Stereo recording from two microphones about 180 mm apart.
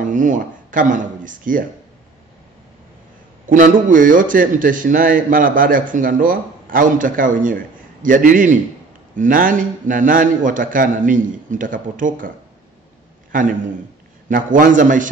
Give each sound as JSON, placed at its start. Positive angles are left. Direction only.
{"t": 0.0, "sound": "speech", "side_deg": -45}
{"t": 3.4, "sound": "a man's voice", "side_deg": -45}
{"t": 13.3, "sound": "a man's voice", "side_deg": -50}